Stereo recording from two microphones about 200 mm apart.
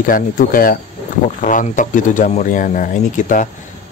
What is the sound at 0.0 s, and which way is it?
Speech, 45° left (ahead or behind).